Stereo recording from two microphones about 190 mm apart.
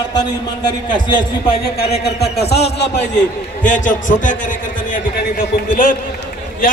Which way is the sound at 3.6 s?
40° left (ahead or behind).